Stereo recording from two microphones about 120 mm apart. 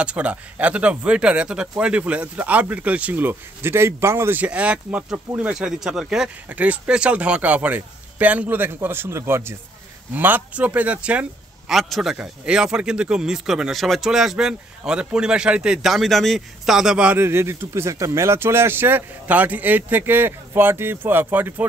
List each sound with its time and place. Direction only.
0.0 s a man's voice: 10° right (ahead or behind)
17.2 s speech: 20° right (ahead or behind)